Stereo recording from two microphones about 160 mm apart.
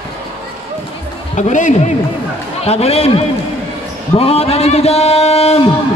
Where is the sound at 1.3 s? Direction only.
50° left (ahead or behind).